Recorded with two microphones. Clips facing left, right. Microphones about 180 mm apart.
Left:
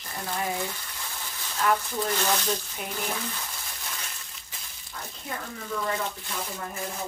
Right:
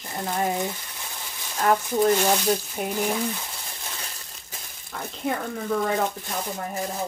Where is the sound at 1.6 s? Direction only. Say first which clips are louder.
Right 4 dB; 40° right (ahead or behind).